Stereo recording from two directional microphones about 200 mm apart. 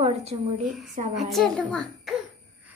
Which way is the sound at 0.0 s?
30° right (ahead or behind).